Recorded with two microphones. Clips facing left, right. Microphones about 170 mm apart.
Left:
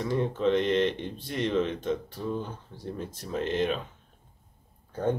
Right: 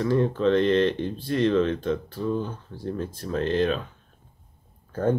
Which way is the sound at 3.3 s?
20° left (ahead or behind).